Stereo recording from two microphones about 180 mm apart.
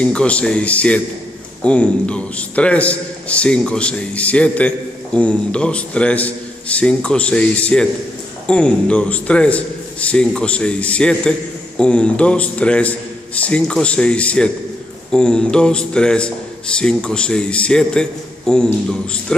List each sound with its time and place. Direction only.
0.0 s a man's voice: 5° left (ahead or behind)